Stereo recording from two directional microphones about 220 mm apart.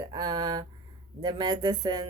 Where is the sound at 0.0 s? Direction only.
20° right (ahead or behind).